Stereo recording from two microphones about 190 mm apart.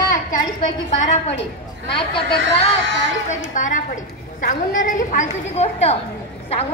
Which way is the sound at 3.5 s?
40° left (ahead or behind).